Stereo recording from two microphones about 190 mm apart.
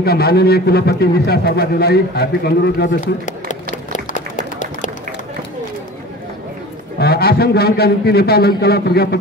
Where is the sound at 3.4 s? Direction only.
40° left (ahead or behind).